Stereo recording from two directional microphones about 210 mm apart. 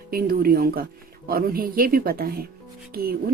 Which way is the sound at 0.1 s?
45° right (ahead or behind).